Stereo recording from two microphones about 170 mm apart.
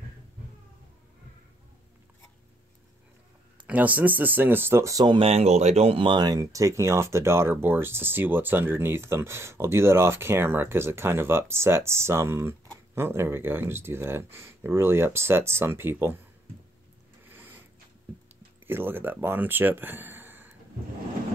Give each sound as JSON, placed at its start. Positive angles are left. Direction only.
{"t": 3.6, "sound": "speech", "side_deg": -10}
{"t": 17.3, "sound": "a sound", "side_deg": -10}
{"t": 18.7, "sound": "speech", "side_deg": -10}